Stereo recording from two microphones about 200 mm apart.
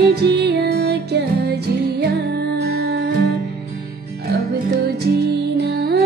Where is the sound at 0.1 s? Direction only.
55° right (ahead or behind).